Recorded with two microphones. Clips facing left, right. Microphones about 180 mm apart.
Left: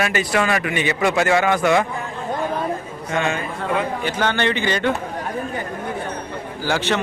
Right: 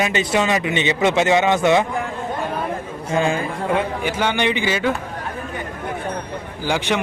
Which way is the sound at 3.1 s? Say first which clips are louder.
Right 3 dB; 30° right (ahead or behind).